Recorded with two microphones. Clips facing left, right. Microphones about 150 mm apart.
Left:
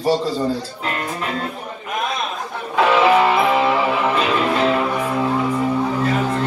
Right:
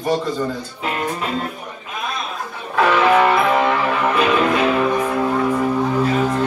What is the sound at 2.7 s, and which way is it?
Music, 10° left (ahead or behind).